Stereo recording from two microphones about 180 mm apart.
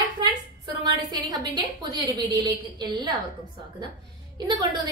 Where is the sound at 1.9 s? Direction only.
20° right (ahead or behind).